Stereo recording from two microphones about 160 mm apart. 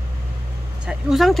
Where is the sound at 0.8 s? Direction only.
5° right (ahead or behind).